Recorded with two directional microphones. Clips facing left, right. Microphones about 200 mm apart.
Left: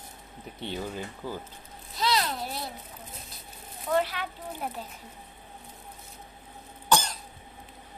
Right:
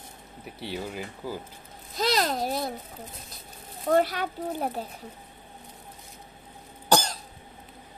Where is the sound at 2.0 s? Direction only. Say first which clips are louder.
Right 3 dB; 45° right (ahead or behind).